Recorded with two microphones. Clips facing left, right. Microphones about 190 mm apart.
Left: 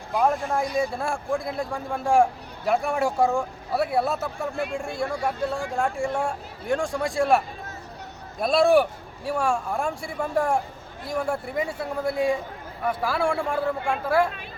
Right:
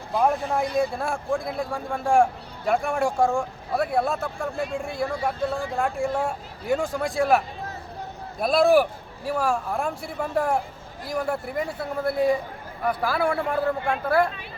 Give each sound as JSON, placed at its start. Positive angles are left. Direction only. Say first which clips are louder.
{"t": 0.2, "sound": "speech", "louder": "even", "side_deg": -5}